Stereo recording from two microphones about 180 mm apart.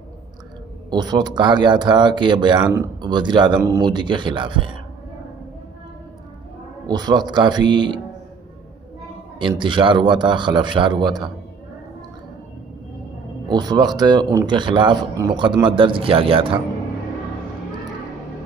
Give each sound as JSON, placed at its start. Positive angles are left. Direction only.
{"t": 0.8, "sound": "speech", "side_deg": -25}
{"t": 6.9, "sound": "speech", "side_deg": -25}
{"t": 9.6, "sound": "speech", "side_deg": -25}
{"t": 13.5, "sound": "speech", "side_deg": -25}